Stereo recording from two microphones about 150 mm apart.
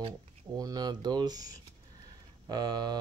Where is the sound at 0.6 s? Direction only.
25° right (ahead or behind).